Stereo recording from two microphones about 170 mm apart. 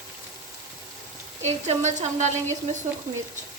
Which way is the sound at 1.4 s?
40° right (ahead or behind).